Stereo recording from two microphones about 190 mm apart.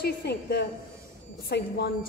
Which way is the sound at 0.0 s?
60° left (ahead or behind).